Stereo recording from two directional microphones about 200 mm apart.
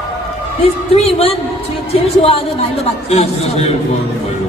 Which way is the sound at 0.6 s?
30° left (ahead or behind).